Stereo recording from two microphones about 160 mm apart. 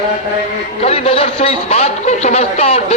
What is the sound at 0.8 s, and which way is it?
A man's voice, 40° left (ahead or behind).